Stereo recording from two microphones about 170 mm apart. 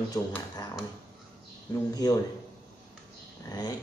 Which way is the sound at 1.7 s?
25° left (ahead or behind).